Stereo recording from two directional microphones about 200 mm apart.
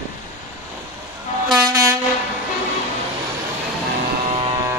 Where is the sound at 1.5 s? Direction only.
15° right (ahead or behind).